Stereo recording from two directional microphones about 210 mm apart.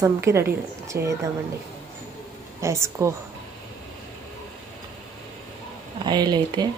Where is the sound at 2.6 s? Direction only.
15° right (ahead or behind).